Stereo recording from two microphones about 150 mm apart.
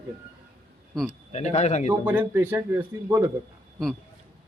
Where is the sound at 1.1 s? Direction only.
50° left (ahead or behind).